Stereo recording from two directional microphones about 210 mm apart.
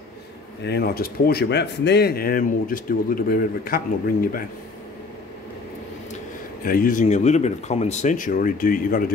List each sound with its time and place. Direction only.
0.7 s speech: 50° left (ahead or behind)
6.6 s speech: 40° left (ahead or behind)